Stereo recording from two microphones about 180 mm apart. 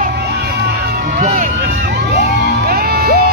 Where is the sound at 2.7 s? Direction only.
55° right (ahead or behind).